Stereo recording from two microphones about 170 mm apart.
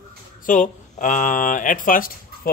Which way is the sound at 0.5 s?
50° left (ahead or behind).